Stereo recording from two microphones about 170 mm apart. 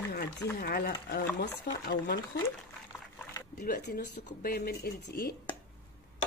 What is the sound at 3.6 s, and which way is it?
Speech, 65° left (ahead or behind).